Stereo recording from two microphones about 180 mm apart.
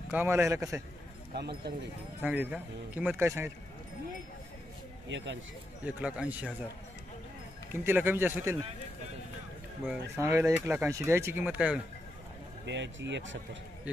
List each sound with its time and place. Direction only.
0.1 s speech: 15° right (ahead or behind)
1.3 s speech: 65° right (ahead or behind)
2.2 s speech: 10° right (ahead or behind)
5.0 s speech: 90° right
5.9 s speech: 5° right (ahead or behind)
7.7 s speech: 10° right (ahead or behind)
10.1 s speech: 15° right (ahead or behind)
12.6 s speech: 80° right